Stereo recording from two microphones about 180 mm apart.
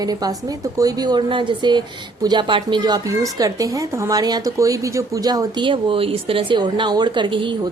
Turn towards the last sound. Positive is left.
turn(degrees=-25)  # may be behind; listen again after turning